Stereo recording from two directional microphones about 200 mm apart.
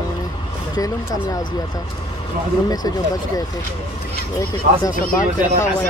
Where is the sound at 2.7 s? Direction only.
20° left (ahead or behind).